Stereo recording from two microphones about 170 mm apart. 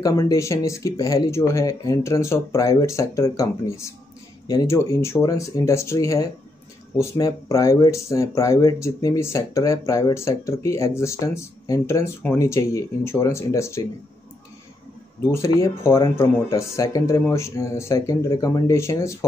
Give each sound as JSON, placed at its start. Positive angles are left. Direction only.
{"t": 0.0, "sound": "speech", "side_deg": 20}
{"t": 15.2, "sound": "speech", "side_deg": 20}